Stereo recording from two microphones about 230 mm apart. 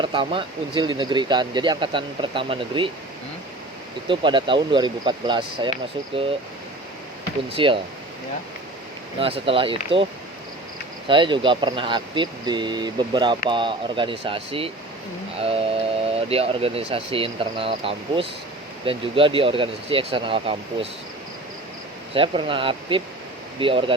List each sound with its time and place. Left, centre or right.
0.0 s speech: right
4.1 s speech: right
7.5 s speech: right
9.1 s speech: right
11.1 s speech: right
22.1 s speech: right